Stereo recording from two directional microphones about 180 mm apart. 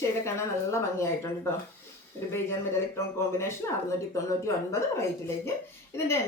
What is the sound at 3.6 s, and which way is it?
Speech, 15° left (ahead or behind).